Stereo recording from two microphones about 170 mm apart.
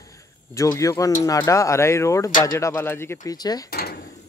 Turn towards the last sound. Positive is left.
turn(degrees=60)  # may be behind; listen again after turning